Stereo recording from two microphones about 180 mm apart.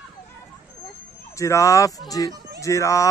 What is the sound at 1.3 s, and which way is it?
Speech, 15° left (ahead or behind).